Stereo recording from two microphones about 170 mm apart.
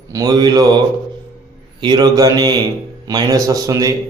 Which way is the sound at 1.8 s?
25° right (ahead or behind).